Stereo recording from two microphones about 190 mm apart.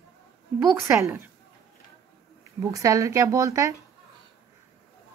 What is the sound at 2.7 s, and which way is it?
Speech, 15° right (ahead or behind).